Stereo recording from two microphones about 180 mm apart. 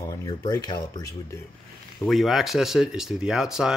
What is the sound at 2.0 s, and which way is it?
Speech, centre (ahead or behind).